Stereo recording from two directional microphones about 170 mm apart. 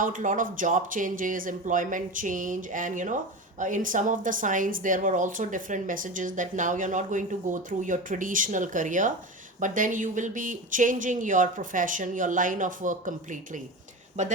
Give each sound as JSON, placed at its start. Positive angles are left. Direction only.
{"t": 0.0, "sound": "a woman's voice", "side_deg": -50}